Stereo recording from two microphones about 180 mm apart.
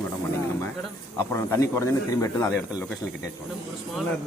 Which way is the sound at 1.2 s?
15° left (ahead or behind).